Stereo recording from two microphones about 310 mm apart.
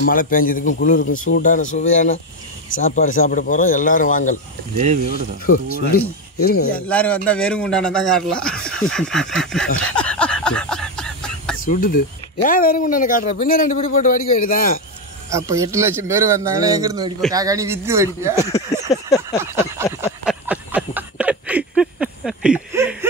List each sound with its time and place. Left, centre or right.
0.0 s speech: left
4.7 s speech: right
5.5 s speech: left
6.4 s speech: left
6.9 s a man's voice: centre
9.8 s a sound: centre
11.6 s speech: left
15.2 s speech: centre
18.9 s a sound: centre
19.4 s speech: centre
20.2 s a sound: centre